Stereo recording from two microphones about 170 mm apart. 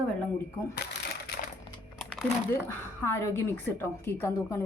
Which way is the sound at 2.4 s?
15° left (ahead or behind).